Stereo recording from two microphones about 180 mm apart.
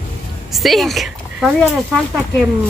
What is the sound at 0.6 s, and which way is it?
Speech, centre (ahead or behind).